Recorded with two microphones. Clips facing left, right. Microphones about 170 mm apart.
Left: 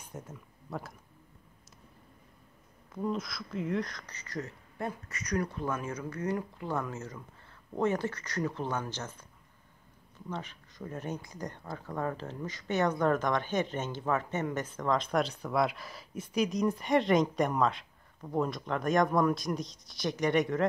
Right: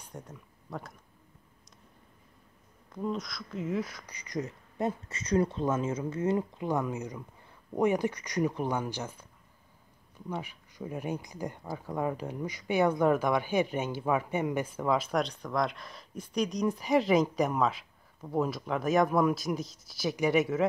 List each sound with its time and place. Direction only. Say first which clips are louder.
0.1 s speech: left 1 dB; centre (ahead or behind)
2.9 s speech: even; centre (ahead or behind)
10.3 s speech: right 2 dB; 10° right (ahead or behind)